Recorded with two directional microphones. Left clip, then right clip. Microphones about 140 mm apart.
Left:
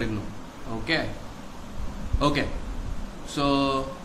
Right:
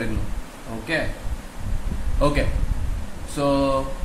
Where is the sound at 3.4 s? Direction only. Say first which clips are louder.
Right 3 dB; 90° right.